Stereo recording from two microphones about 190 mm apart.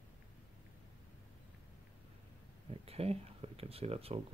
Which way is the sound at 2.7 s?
30° right (ahead or behind).